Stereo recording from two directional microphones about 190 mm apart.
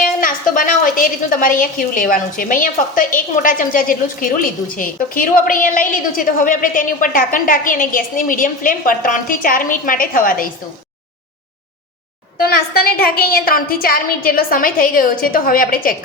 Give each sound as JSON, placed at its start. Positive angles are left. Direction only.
{"t": 0.0, "sound": "a woman's voice", "side_deg": 45}
{"t": 12.4, "sound": "a woman's voice", "side_deg": 50}